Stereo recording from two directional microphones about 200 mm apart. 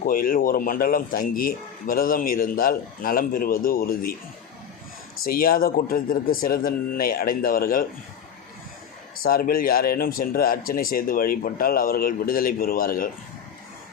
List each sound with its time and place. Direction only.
0.0 s a man's voice: 45° left (ahead or behind)
5.2 s a man's voice: 45° left (ahead or behind)
9.2 s a man's voice: 45° left (ahead or behind)